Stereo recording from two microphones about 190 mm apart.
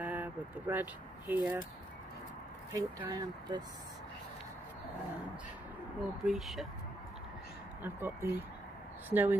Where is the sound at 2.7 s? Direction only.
20° right (ahead or behind).